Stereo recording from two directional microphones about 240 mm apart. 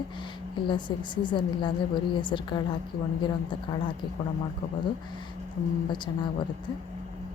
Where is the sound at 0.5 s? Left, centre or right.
Centre.